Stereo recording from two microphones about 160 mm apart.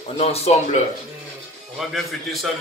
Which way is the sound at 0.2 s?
40° left (ahead or behind).